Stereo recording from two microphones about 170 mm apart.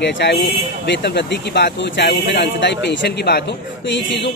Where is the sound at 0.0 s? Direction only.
90° left.